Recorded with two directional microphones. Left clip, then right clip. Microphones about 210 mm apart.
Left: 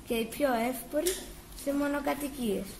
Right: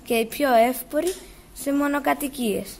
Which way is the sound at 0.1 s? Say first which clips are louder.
Right 10 dB; 50° right (ahead or behind).